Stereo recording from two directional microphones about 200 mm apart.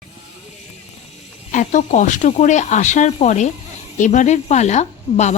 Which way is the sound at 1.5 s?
40° left (ahead or behind).